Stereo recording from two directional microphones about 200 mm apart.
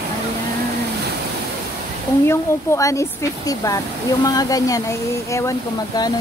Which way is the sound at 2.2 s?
15° left (ahead or behind).